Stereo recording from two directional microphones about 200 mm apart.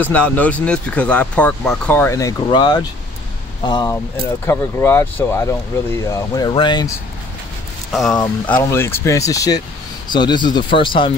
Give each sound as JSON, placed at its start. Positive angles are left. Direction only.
{"t": 0.0, "sound": "speech", "side_deg": 5}
{"t": 7.9, "sound": "speech", "side_deg": 0}
{"t": 8.5, "sound": "speech", "side_deg": 10}